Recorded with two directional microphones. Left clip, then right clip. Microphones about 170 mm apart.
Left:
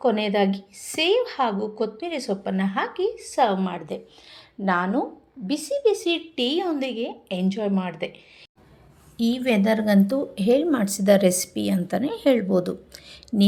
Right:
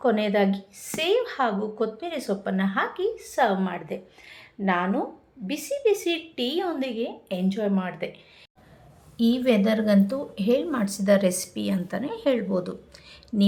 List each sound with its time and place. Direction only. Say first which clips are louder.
0.0 s a woman's voice: left 1 dB; 20° left (ahead or behind)
9.1 s a woman's voice: right 1 dB; 20° left (ahead or behind)